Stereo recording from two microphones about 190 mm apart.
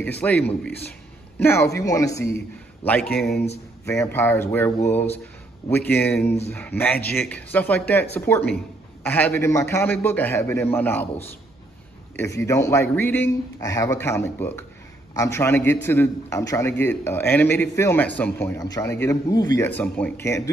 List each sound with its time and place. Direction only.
0.2 s a man's voice: 10° left (ahead or behind)
6.7 s speech: 35° left (ahead or behind)
7.2 s a man's voice: 10° left (ahead or behind)
19.8 s a man's voice: 5° left (ahead or behind)